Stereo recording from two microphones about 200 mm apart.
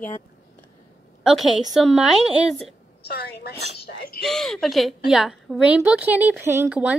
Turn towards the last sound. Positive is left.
turn(degrees=-5)  # may be behind; listen again after turning